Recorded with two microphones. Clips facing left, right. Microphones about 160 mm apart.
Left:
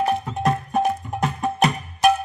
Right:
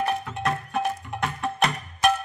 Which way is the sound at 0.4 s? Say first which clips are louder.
Left 5 dB; 45° left (ahead or behind).